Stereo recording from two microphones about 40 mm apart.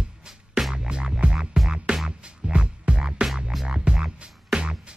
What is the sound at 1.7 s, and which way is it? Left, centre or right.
Music, right.